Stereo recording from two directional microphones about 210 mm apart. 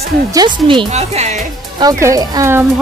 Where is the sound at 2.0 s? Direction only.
15° right (ahead or behind).